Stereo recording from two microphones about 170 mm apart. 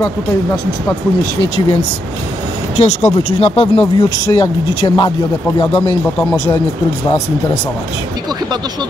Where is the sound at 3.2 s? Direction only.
35° left (ahead or behind).